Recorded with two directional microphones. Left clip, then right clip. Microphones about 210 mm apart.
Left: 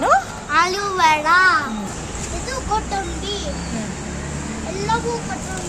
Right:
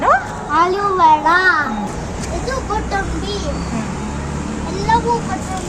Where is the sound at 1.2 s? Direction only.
25° left (ahead or behind).